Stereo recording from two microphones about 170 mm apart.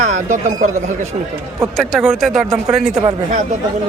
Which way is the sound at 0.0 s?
45° right (ahead or behind).